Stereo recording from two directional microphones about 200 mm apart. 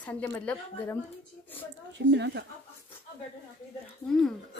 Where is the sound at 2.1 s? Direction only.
60° right (ahead or behind).